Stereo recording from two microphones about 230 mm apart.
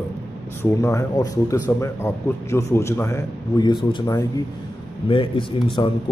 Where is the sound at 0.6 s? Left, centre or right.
Centre.